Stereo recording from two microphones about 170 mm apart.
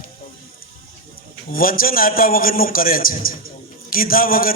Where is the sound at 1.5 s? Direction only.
55° left (ahead or behind).